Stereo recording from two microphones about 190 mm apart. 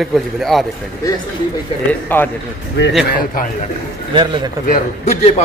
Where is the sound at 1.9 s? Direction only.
10° left (ahead or behind).